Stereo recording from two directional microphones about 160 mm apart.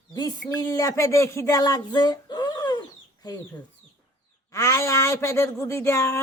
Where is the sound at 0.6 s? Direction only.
20° left (ahead or behind).